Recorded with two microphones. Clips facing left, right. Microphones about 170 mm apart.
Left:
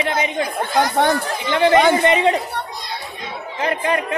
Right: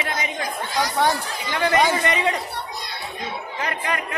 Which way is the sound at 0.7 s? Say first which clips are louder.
Left 4 dB; 55° left (ahead or behind).